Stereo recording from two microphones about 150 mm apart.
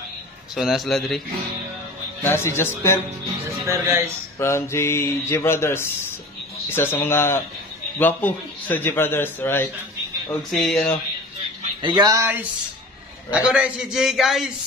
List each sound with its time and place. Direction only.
0.6 s a man's voice: centre (ahead or behind)
2.2 s a man's voice: 15° left (ahead or behind)
3.6 s speech: 20° right (ahead or behind)
4.4 s a man's voice: 15° left (ahead or behind)
10.5 s a man's voice: centre (ahead or behind)
11.8 s a man's voice: 30° right (ahead or behind); by 14.5 s centre (ahead or behind)